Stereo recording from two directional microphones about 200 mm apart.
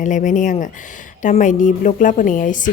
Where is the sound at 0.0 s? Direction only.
40° left (ahead or behind).